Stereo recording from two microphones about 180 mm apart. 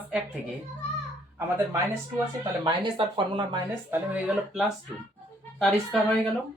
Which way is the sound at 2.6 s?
25° right (ahead or behind).